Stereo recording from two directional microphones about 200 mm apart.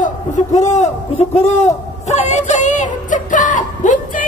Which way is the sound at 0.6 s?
35° left (ahead or behind).